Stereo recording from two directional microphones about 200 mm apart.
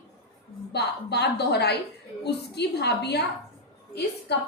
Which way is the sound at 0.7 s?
55° left (ahead or behind).